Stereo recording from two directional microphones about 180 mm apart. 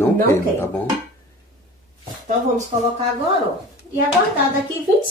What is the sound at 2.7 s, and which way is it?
Speech, 40° right (ahead or behind).